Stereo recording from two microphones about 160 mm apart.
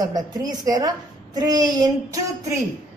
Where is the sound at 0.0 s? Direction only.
25° right (ahead or behind).